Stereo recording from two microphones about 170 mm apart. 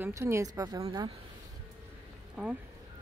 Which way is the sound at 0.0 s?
15° right (ahead or behind).